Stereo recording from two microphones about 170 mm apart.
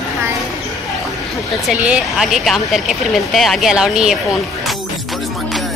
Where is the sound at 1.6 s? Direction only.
10° right (ahead or behind).